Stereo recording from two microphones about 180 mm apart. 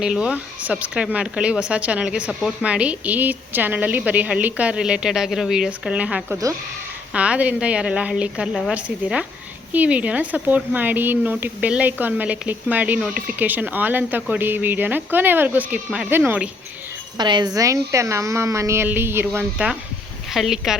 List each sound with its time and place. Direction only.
0.0 s speech: 5° right (ahead or behind)
17.2 s speech: 25° right (ahead or behind); by 20.7 s centre (ahead or behind)